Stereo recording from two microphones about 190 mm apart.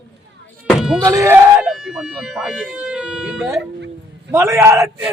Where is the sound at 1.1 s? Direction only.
15° right (ahead or behind).